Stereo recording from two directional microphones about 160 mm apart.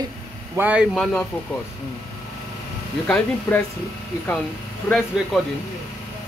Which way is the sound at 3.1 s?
10° left (ahead or behind).